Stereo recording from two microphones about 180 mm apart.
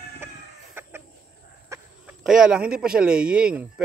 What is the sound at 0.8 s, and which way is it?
Chicken, 10° right (ahead or behind).